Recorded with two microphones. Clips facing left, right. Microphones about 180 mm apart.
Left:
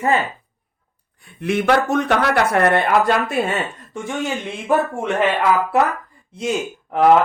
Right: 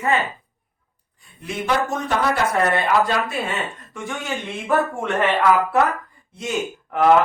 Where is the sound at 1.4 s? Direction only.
65° left (ahead or behind).